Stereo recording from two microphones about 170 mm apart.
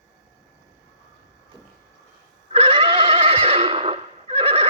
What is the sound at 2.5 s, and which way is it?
Neigh, 30° right (ahead or behind).